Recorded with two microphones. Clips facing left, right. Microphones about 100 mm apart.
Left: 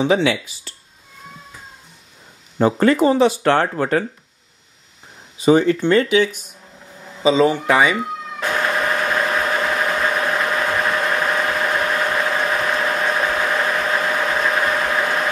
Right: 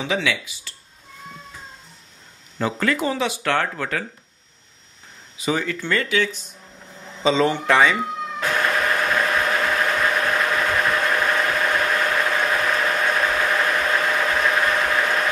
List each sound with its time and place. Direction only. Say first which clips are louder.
0.0 s speech: left 7 dB; 35° left (ahead or behind)
2.6 s speech: left 8 dB; 35° left (ahead or behind)
5.4 s speech: left 10 dB; 30° left (ahead or behind)
5.8 s a man's voice: left 7 dB; 20° left (ahead or behind)
8.4 s engine knocking: left 2 dB; 5° left (ahead or behind)